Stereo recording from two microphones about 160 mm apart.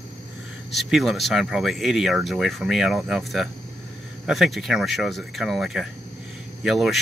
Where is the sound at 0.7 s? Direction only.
Centre (ahead or behind).